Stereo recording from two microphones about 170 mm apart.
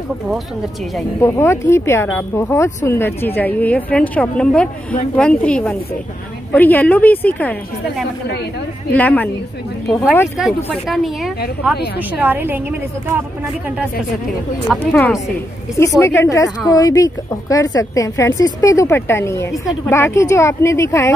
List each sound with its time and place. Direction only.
1.2 s a woman's voice: 15° left (ahead or behind)
8.9 s a woman's voice: 10° left (ahead or behind)
10.3 s a woman's voice: centre (ahead or behind)
14.8 s a woman's voice: 10° left (ahead or behind)